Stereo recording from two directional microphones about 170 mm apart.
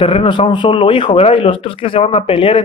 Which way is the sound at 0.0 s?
35° left (ahead or behind).